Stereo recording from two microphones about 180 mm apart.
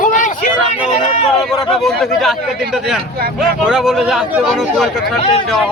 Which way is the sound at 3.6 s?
5° right (ahead or behind).